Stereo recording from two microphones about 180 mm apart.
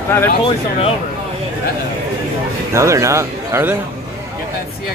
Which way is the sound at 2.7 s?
15° right (ahead or behind).